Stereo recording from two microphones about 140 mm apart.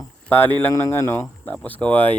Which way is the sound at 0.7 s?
25° left (ahead or behind).